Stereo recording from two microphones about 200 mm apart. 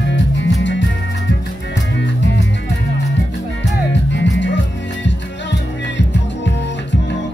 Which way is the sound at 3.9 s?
65° left (ahead or behind).